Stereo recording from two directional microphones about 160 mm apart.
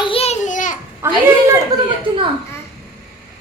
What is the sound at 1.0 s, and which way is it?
Speech, 15° right (ahead or behind).